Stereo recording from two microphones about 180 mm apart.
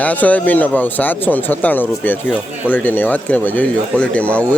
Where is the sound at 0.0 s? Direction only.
10° left (ahead or behind).